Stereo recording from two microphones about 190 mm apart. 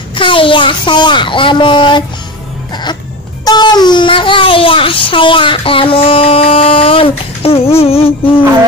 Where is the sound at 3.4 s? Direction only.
20° left (ahead or behind).